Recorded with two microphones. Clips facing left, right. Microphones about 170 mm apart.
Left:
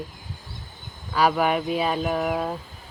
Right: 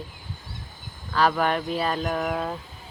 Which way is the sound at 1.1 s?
10° left (ahead or behind).